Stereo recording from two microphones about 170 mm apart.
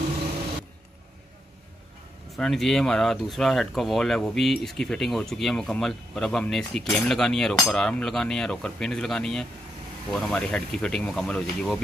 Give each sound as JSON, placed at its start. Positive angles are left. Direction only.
{"t": 2.3, "sound": "speech", "side_deg": 0}